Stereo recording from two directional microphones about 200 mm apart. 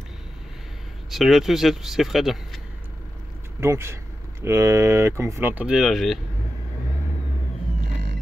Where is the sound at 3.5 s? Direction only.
15° right (ahead or behind).